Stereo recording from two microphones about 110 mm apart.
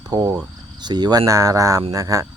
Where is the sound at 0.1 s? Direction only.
35° right (ahead or behind).